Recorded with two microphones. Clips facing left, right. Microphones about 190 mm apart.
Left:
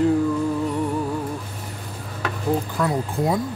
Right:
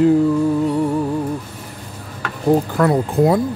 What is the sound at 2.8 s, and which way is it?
Speech, 65° right (ahead or behind).